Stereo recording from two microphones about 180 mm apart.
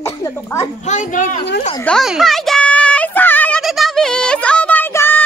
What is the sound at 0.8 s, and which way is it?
Speech, 40° left (ahead or behind).